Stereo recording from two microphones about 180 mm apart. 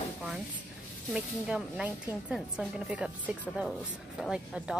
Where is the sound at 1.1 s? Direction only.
5° right (ahead or behind).